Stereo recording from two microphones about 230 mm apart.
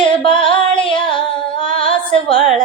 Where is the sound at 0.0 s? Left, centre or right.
Left.